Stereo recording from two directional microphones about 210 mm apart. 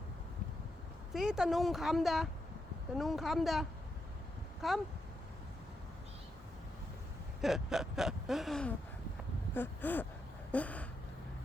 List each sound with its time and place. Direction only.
1.1 s gasp: centre (ahead or behind)
7.4 s gasp: centre (ahead or behind)
9.6 s speech: 10° left (ahead or behind)
10.5 s a sound: 5° left (ahead or behind)